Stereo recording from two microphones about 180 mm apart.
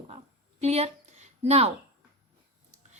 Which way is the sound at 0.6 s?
35° right (ahead or behind).